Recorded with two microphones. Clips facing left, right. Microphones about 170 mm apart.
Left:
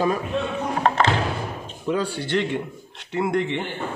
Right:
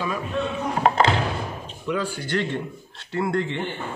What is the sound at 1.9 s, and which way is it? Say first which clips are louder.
A woman's voice: left 2 dB; 35° left (ahead or behind).